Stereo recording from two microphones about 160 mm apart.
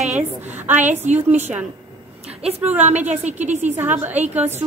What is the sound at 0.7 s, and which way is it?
A woman's voice, 50° right (ahead or behind).